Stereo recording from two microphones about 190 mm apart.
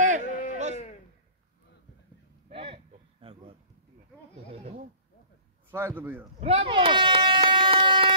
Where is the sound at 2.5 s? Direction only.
30° right (ahead or behind).